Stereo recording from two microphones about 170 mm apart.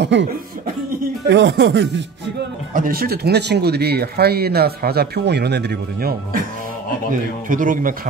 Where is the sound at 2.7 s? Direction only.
55° right (ahead or behind).